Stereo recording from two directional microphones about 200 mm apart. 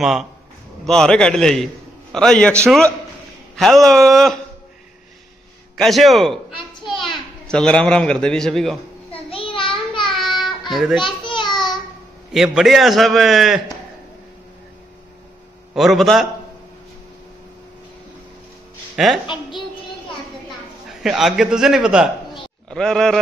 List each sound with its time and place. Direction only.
0.0 s a man's voice: centre (ahead or behind)
5.8 s a man's voice: centre (ahead or behind)
6.5 s a sound: 25° left (ahead or behind)
7.4 s a man's voice: 5° left (ahead or behind)
9.1 s child singing: 25° left (ahead or behind)
10.1 s child singing: centre (ahead or behind)
10.7 s a child's voice: centre (ahead or behind)
11.0 s a sound: 25° left (ahead or behind)
12.3 s a man's voice: centre (ahead or behind)
15.7 s a man's voice: centre (ahead or behind)
19.0 s a man's voice: 5° right (ahead or behind)
21.0 s a man's voice: centre (ahead or behind)